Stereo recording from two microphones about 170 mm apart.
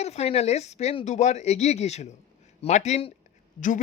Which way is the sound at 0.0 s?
40° left (ahead or behind).